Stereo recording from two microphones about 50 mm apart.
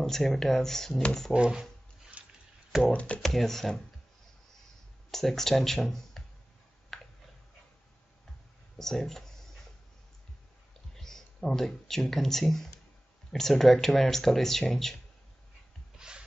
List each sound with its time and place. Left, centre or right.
0.0 s speech: centre
1.3 s speech: centre
2.2 s a sound: right
2.9 s speech: left
3.2 s speech: centre
5.1 s speech: centre
6.9 s a sound: centre
8.7 s speech: centre
11.0 s speech: centre
16.0 s a sound: centre